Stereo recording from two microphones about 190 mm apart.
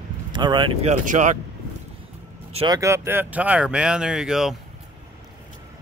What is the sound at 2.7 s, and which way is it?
Speech, 15° right (ahead or behind).